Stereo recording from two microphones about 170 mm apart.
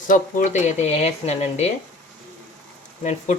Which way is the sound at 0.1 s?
50° left (ahead or behind).